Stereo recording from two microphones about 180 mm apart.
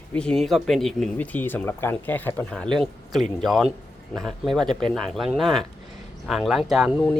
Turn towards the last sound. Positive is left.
turn(degrees=0)  # may be behind; listen again after turning